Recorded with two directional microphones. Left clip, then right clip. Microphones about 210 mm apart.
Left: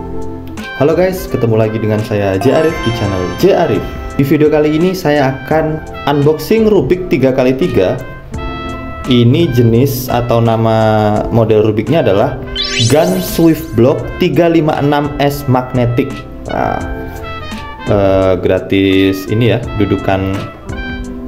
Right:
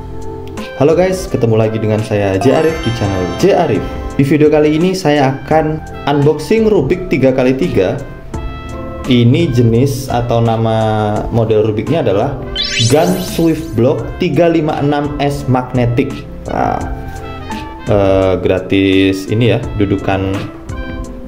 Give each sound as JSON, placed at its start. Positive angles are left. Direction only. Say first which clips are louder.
{"t": 0.7, "sound": "speech", "louder": "right 1 dB", "side_deg": 5}
{"t": 9.0, "sound": "speech", "louder": "left 1 dB", "side_deg": 10}
{"t": 12.5, "sound": "music", "louder": "right 1 dB", "side_deg": 0}
{"t": 13.0, "sound": "speech", "louder": "left 2 dB", "side_deg": 0}
{"t": 13.5, "sound": "speech", "louder": "left 2 dB", "side_deg": 20}
{"t": 15.7, "sound": "speech", "louder": "left 1 dB", "side_deg": 5}
{"t": 17.8, "sound": "speech", "louder": "left 1 dB", "side_deg": 5}